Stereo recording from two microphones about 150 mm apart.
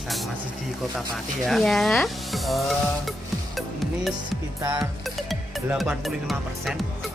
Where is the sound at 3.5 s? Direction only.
Centre (ahead or behind).